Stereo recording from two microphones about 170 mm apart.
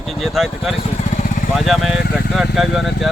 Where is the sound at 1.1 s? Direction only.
50° left (ahead or behind).